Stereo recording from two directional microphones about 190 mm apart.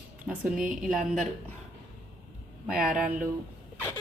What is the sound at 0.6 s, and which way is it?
Speech, 45° right (ahead or behind).